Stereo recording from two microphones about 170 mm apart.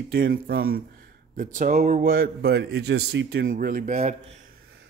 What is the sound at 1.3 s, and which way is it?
Speech, 50° right (ahead or behind).